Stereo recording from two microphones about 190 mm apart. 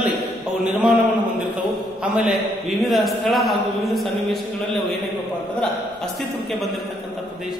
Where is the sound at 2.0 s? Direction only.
5° right (ahead or behind).